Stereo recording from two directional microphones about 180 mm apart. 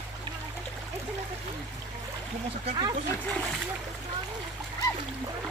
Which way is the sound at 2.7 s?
25° right (ahead or behind).